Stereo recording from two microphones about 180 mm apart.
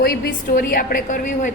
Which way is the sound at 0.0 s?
55° left (ahead or behind).